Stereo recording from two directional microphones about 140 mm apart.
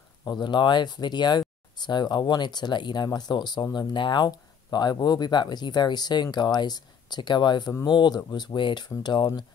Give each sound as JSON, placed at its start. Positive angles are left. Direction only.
{"t": 0.2, "sound": "speech", "side_deg": 30}